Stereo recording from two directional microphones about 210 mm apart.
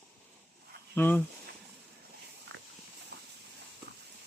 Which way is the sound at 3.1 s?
55° right (ahead or behind).